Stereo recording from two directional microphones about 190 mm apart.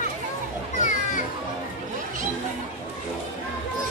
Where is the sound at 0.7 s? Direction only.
40° left (ahead or behind).